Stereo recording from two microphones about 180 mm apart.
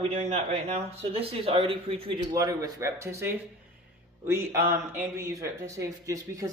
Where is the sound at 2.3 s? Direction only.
20° right (ahead or behind).